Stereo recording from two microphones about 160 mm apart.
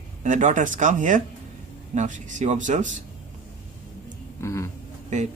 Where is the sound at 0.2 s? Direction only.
50° right (ahead or behind).